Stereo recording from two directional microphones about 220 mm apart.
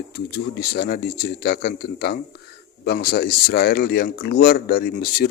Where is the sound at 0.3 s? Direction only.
45° left (ahead or behind).